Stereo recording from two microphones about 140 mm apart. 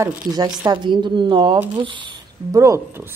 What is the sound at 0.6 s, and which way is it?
A woman's voice, 35° right (ahead or behind).